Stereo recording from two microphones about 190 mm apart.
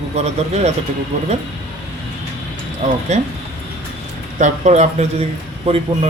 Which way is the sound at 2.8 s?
40° right (ahead or behind).